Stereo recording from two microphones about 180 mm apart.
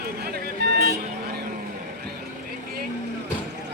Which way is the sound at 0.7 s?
65° right (ahead or behind).